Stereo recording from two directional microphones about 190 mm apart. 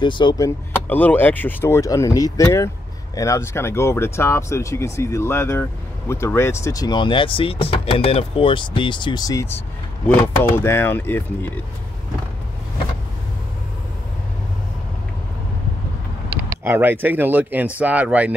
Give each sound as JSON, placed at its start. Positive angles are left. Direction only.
{"t": 0.0, "sound": "speech", "side_deg": 25}
{"t": 0.8, "sound": "speech", "side_deg": 10}
{"t": 16.6, "sound": "speech", "side_deg": -10}